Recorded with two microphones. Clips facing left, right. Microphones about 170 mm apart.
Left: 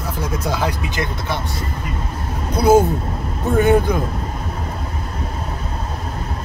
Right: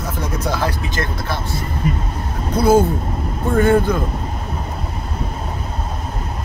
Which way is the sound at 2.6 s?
15° left (ahead or behind).